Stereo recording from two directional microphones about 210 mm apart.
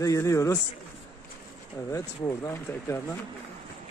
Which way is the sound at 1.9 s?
15° left (ahead or behind).